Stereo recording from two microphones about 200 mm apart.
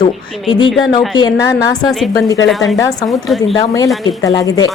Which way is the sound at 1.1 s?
20° left (ahead or behind).